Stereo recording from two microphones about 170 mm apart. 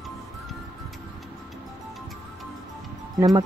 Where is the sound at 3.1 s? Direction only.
20° right (ahead or behind).